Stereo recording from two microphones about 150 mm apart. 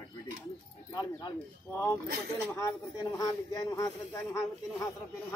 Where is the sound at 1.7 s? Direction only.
10° left (ahead or behind).